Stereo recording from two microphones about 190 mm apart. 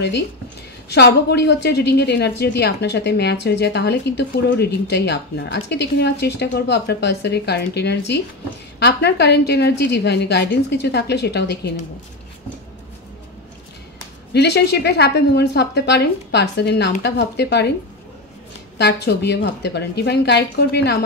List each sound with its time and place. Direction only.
0.9 s a woman's voice: 60° left (ahead or behind)
14.3 s a woman's voice: 60° left (ahead or behind)
18.8 s a woman's voice: 65° left (ahead or behind)